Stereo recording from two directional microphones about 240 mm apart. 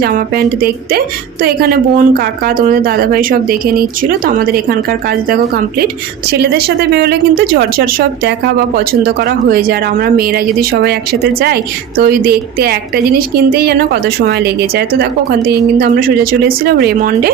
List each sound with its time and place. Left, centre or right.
0.0 s a woman's voice: right